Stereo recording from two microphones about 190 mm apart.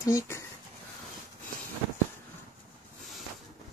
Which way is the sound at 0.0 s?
15° left (ahead or behind).